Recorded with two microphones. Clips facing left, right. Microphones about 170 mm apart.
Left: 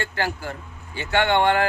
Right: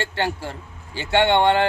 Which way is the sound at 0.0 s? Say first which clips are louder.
Right 2 dB; 30° right (ahead or behind).